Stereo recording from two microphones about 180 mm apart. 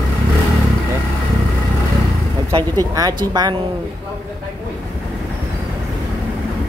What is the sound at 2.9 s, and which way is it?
Speech, 20° right (ahead or behind).